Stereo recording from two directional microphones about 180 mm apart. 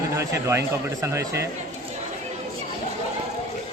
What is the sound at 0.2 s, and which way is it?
A man's voice, 15° right (ahead or behind).